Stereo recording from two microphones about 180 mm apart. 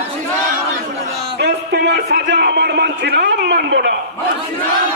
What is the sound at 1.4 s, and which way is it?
Music, 70° right (ahead or behind).